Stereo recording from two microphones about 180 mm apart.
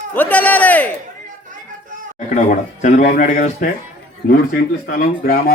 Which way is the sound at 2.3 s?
40° left (ahead or behind).